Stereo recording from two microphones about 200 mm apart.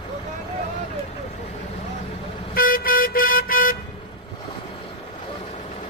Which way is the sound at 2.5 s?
45° left (ahead or behind).